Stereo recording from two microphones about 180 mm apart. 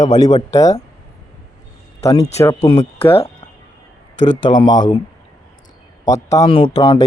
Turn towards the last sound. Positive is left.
turn(degrees=30)  # may be behind; listen again after turning